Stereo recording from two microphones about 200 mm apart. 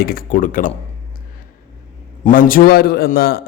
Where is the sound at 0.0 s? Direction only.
45° left (ahead or behind).